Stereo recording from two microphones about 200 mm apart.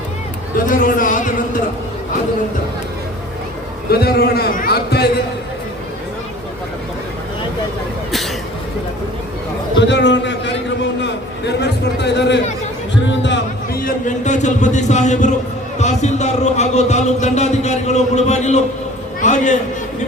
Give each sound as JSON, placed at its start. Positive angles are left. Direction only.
{"t": 0.5, "sound": "a sound", "side_deg": 45}
{"t": 3.8, "sound": "a man's voice", "side_deg": 50}
{"t": 9.8, "sound": "a man's voice", "side_deg": 65}
{"t": 13.8, "sound": "speech", "side_deg": 35}